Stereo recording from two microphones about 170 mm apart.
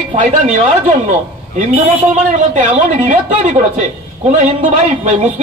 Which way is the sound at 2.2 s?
45° right (ahead or behind).